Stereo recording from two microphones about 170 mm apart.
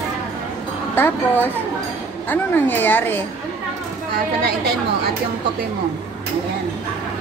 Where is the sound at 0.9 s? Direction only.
10° left (ahead or behind).